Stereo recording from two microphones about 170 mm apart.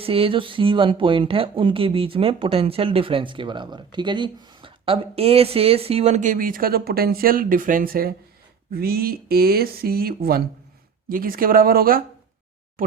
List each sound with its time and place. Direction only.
0.0 s speech: 35° right (ahead or behind); by 12.0 s 60° right (ahead or behind)